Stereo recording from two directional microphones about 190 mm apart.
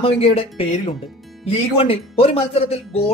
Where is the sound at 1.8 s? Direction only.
30° left (ahead or behind).